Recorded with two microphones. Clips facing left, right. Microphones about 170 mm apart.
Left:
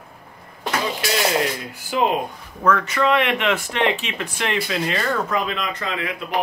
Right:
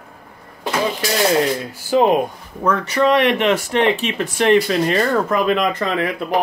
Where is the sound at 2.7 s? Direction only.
35° right (ahead or behind).